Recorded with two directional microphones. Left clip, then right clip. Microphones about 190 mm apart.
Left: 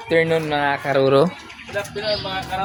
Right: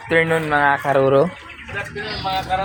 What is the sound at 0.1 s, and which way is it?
Speech, 10° left (ahead or behind).